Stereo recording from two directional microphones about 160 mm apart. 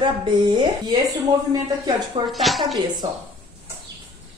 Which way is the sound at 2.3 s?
Centre (ahead or behind).